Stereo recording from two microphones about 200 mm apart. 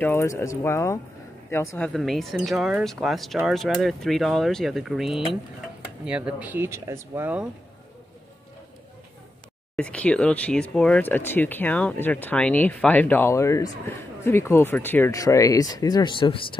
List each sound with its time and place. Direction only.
0.0 s speech: 15° left (ahead or behind)
1.9 s speech: centre (ahead or behind)
9.8 s speech: 5° left (ahead or behind); by 16.5 s 25° left (ahead or behind)